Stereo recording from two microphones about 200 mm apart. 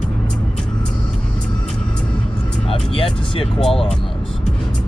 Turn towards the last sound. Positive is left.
turn(degrees=0)  # may be behind; listen again after turning